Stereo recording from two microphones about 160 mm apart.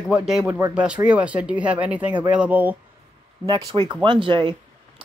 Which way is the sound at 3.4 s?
25° right (ahead or behind).